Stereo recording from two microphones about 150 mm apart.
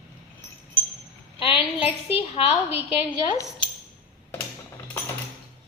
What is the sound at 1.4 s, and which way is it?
A woman's voice, 35° left (ahead or behind).